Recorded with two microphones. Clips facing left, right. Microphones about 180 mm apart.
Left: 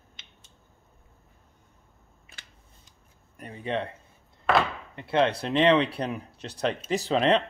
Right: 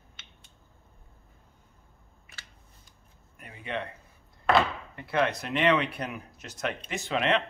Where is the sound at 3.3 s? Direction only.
35° left (ahead or behind).